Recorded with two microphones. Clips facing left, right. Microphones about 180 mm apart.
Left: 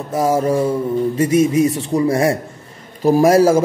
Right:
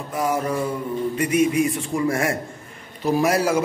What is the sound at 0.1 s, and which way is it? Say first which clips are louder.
Mantra: left 7 dB; 30° left (ahead or behind).